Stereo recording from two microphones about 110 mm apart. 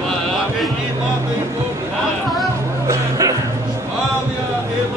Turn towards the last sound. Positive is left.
turn(degrees=-30)  # may be behind; listen again after turning